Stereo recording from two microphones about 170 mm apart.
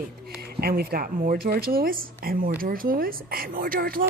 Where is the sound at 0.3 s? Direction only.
65° right (ahead or behind).